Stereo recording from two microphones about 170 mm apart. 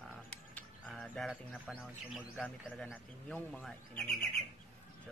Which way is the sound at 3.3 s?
5° left (ahead or behind).